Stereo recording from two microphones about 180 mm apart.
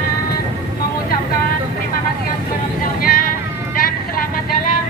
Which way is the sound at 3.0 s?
55° left (ahead or behind).